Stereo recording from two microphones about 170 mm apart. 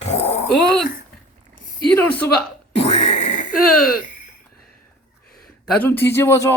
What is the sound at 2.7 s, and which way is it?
Grunt, 40° left (ahead or behind).